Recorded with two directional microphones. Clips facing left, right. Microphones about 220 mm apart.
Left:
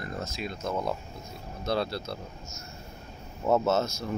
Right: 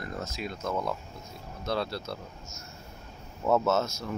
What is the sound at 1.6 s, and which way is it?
Speech, 30° left (ahead or behind).